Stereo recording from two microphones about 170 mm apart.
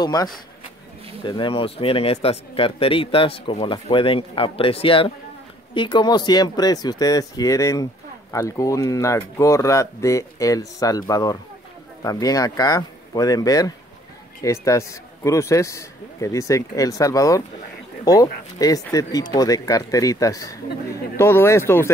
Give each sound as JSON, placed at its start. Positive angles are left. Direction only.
{"t": 0.0, "sound": "speech", "side_deg": 20}